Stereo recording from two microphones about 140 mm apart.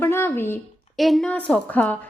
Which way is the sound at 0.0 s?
15° left (ahead or behind).